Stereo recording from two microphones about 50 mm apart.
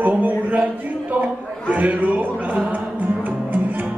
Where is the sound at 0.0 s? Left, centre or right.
Right.